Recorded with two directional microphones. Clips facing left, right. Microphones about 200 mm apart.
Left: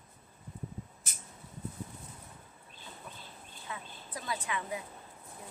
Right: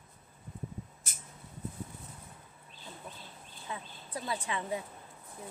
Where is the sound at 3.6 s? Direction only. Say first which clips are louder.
Right 2 dB; 30° right (ahead or behind).